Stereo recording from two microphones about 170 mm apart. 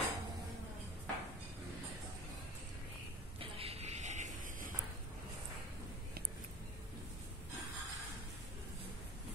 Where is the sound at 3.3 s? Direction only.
35° right (ahead or behind); by 4.7 s 50° right (ahead or behind).